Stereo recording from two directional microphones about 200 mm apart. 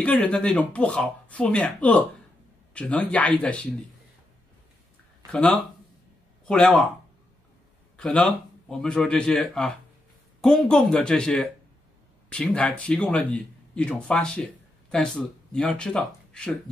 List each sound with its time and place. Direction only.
0.0 s speech: 5° left (ahead or behind)
5.3 s speech: 5° left (ahead or behind)
8.0 s speech: 5° left (ahead or behind)